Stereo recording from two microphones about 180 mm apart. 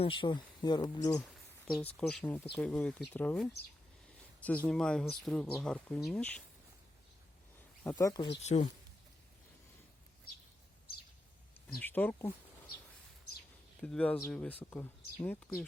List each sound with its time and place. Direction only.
0.0 s speech: 25° left (ahead or behind)
1.2 s speech: 5° left (ahead or behind)
7.9 s speech: 20° left (ahead or behind)
8.4 s speech: 35° left (ahead or behind)
11.8 s speech: 10° left (ahead or behind)
13.8 s speech: 5° left (ahead or behind)